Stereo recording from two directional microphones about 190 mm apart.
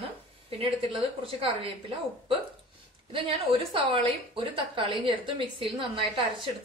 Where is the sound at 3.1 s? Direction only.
30° right (ahead or behind).